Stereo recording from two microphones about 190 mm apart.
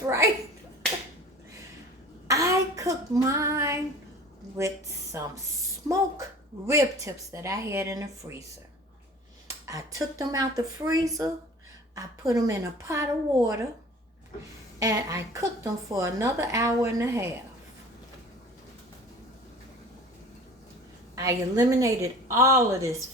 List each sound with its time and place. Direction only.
0.0 s a child's voice: 15° right (ahead or behind)
2.2 s child singing: 15° right (ahead or behind)
5.1 s a woman's voice: 15° right (ahead or behind)
6.7 s a woman's voice: 15° right (ahead or behind)
9.6 s a woman's voice: 15° right (ahead or behind)
14.8 s a woman's voice: 15° right (ahead or behind)
21.2 s a woman's voice: 15° right (ahead or behind)